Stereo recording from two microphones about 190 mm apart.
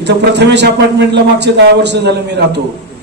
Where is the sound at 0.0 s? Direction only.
65° right (ahead or behind).